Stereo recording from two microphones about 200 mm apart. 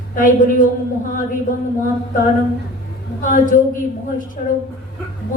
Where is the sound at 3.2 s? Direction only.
40° left (ahead or behind).